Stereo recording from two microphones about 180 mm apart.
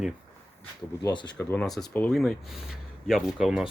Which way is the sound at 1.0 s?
25° left (ahead or behind).